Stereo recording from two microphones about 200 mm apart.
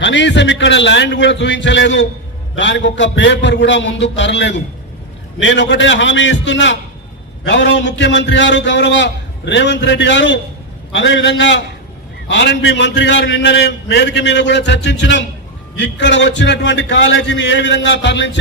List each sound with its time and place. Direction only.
0.0 s a man's voice: 65° left (ahead or behind)